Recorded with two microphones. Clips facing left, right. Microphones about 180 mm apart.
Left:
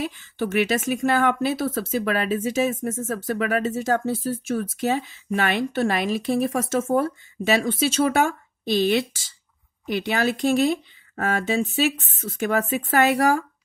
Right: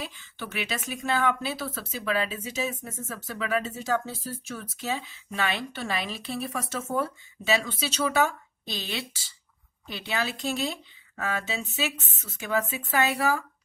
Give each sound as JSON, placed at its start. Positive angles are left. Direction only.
{"t": 0.0, "sound": "speech", "side_deg": 45}
{"t": 10.3, "sound": "speech", "side_deg": 75}
{"t": 11.1, "sound": "speech", "side_deg": 45}